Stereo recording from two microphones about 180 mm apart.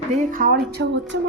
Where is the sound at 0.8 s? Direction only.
80° right.